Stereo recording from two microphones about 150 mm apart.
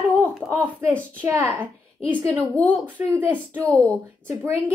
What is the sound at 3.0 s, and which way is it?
Speech, 15° right (ahead or behind).